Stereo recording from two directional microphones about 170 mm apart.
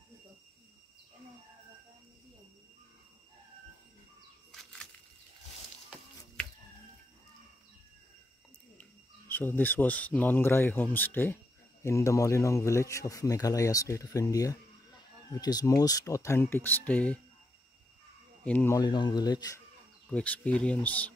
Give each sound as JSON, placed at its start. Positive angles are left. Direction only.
{"t": 4.5, "sound": "bird flight", "side_deg": 0}
{"t": 9.3, "sound": "speech", "side_deg": 10}
{"t": 18.4, "sound": "speech", "side_deg": 10}
{"t": 18.8, "sound": "speech", "side_deg": 25}
{"t": 20.1, "sound": "speech", "side_deg": 5}